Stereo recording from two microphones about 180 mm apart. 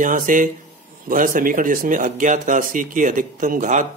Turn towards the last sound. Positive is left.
turn(degrees=-45)  # may be behind; listen again after turning